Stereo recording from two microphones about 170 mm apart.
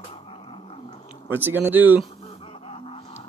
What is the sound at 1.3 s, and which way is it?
Speech, 10° right (ahead or behind).